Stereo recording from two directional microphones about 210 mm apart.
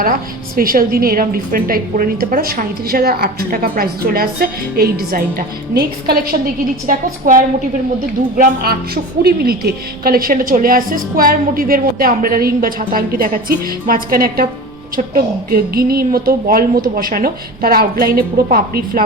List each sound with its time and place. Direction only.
0.0 s a woman's voice: 45° right (ahead or behind)